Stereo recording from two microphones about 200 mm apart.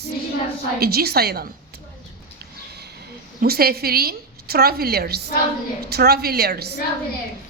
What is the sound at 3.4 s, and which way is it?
A woman's voice, 50° right (ahead or behind).